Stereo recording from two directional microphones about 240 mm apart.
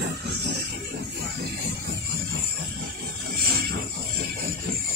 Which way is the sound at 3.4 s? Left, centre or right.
Right.